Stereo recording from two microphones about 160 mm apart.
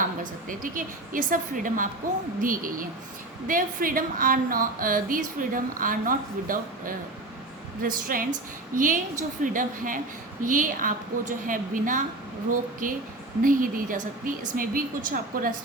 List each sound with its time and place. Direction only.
0.2 s a woman's voice: 55° right (ahead or behind)